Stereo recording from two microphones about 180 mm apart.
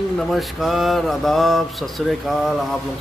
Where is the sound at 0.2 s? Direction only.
Centre (ahead or behind).